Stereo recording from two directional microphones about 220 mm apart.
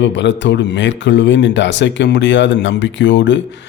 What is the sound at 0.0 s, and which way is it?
A man's voice, 55° left (ahead or behind).